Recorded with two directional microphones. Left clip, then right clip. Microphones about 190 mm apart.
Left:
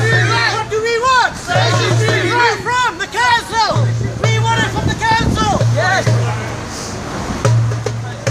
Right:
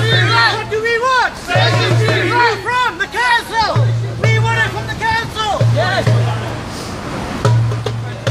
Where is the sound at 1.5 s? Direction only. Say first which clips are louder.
Right 1 dB; 15° right (ahead or behind).